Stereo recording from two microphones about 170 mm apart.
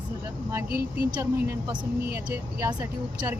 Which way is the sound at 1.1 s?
20° right (ahead or behind).